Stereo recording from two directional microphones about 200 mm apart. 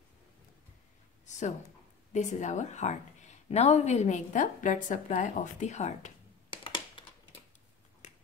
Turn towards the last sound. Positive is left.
turn(degrees=25)  # may be behind; listen again after turning